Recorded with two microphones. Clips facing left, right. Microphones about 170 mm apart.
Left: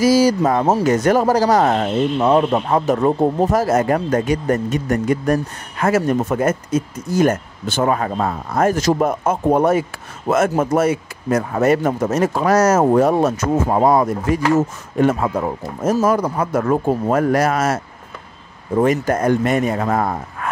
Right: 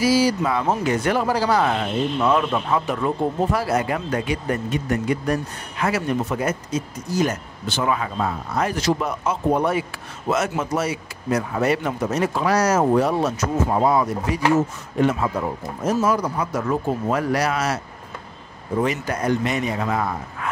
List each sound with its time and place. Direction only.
0.0 s speech: 45° left (ahead or behind)